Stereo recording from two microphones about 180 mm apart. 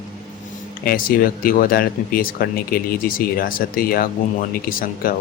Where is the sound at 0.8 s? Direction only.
55° left (ahead or behind).